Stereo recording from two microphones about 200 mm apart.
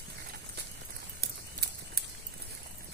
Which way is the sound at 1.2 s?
55° right (ahead or behind).